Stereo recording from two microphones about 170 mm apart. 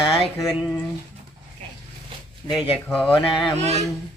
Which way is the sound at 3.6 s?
40° right (ahead or behind).